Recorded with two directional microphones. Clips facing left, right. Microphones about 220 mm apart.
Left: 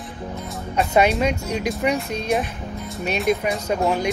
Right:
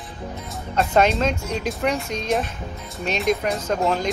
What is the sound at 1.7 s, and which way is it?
Speech, centre (ahead or behind).